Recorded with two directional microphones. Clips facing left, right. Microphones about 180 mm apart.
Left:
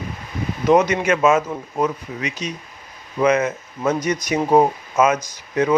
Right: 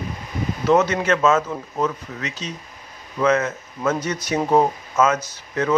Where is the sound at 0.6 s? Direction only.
15° left (ahead or behind).